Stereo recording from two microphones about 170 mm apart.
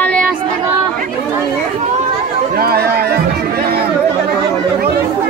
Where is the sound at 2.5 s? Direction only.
65° right (ahead or behind).